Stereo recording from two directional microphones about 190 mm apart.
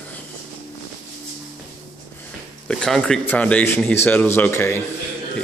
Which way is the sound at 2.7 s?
5° left (ahead or behind).